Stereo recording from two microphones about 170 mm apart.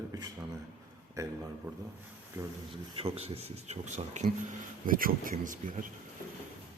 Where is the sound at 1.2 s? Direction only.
20° right (ahead or behind).